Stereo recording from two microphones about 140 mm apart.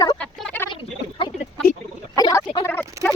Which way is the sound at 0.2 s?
5° left (ahead or behind).